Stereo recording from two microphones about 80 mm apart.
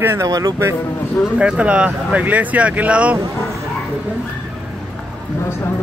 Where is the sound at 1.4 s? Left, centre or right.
Centre.